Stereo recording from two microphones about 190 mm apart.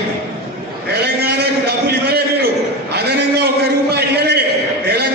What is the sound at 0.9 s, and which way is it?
A man's voice, 60° right (ahead or behind).